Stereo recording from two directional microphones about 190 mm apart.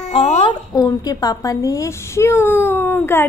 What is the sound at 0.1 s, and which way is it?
A woman's voice, 30° left (ahead or behind).